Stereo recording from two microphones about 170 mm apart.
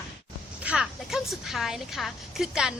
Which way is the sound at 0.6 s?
Centre (ahead or behind).